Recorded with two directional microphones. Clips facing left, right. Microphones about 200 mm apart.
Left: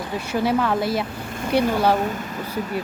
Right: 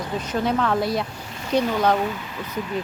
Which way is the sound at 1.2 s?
55° left (ahead or behind).